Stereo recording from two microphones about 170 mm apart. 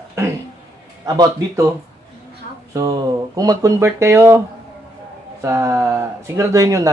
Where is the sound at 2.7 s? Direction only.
20° right (ahead or behind).